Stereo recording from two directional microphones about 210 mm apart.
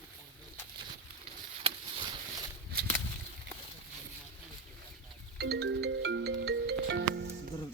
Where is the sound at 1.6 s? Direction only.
25° right (ahead or behind).